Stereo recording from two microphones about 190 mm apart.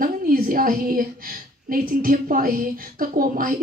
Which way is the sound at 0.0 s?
50° right (ahead or behind).